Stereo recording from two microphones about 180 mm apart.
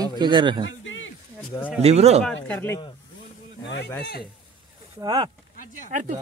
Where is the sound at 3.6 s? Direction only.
75° left (ahead or behind).